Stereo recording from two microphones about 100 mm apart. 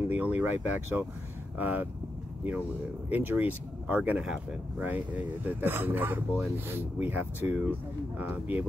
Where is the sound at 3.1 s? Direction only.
20° right (ahead or behind).